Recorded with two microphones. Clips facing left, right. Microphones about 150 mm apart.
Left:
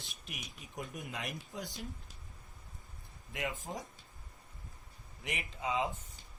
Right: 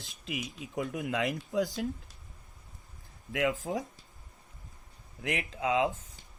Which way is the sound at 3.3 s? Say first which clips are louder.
Right 9 dB; 90° right.